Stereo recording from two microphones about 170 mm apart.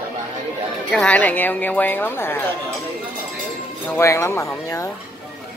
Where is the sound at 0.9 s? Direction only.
10° left (ahead or behind).